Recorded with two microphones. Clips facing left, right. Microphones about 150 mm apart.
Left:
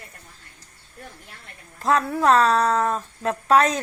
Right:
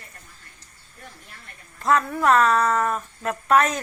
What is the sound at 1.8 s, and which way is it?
Speech, 35° left (ahead or behind).